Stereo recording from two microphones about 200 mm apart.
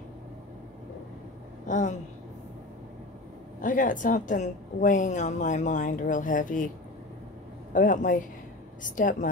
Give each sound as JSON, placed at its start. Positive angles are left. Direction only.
{"t": 1.7, "sound": "a woman's voice", "side_deg": 40}
{"t": 3.6, "sound": "a woman's voice", "side_deg": 40}
{"t": 7.7, "sound": "a woman's voice", "side_deg": 40}